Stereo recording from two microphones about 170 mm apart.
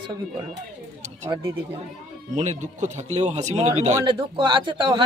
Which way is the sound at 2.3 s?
45° right (ahead or behind).